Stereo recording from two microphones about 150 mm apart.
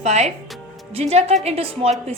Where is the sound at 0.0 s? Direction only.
45° right (ahead or behind).